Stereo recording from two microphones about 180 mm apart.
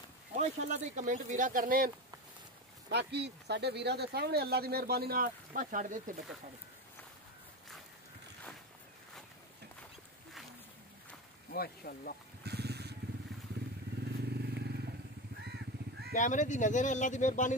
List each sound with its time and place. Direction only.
0.4 s speech: 40° right (ahead or behind)
2.9 s speech: 70° right (ahead or behind); by 6.1 s 45° right (ahead or behind)
11.5 s speech: 55° left (ahead or behind)
12.4 s vehicle: 65° right (ahead or behind)
14.2 s vehicle: 65° right (ahead or behind)
16.2 s speech: 45° left (ahead or behind)